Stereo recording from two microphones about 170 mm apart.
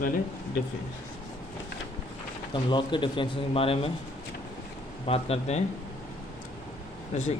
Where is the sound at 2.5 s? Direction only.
30° left (ahead or behind).